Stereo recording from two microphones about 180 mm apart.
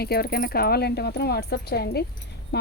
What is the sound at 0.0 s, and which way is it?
Speech, 60° left (ahead or behind).